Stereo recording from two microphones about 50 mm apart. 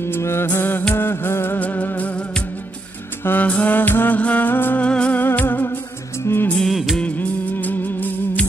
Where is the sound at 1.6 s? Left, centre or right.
Left.